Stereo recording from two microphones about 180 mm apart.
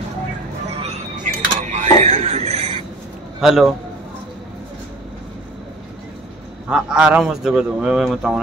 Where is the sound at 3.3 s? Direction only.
5° right (ahead or behind).